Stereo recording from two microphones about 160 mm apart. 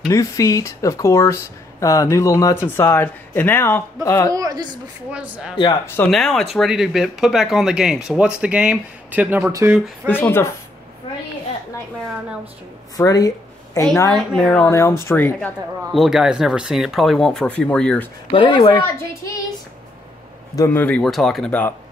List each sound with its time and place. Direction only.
0.1 s speech: 20° left (ahead or behind)
4.3 s speech: 20° right (ahead or behind)
5.1 s speech: 10° right (ahead or behind)
6.0 s speech: 5° left (ahead or behind); by 9.8 s 20° right (ahead or behind)
10.0 s speech: 10° left (ahead or behind)
12.9 s speech: 20° left (ahead or behind)
14.1 s speech: centre (ahead or behind)
14.7 s speech: 15° left (ahead or behind)
15.9 s speech: centre (ahead or behind)
18.3 s speech: 30° left (ahead or behind)
20.5 s speech: 15° left (ahead or behind)